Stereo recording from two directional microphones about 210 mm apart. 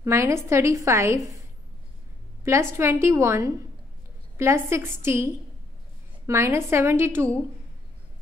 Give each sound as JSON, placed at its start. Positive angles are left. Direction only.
{"t": 0.0, "sound": "a woman's voice", "side_deg": -15}
{"t": 2.8, "sound": "a woman's voice", "side_deg": -10}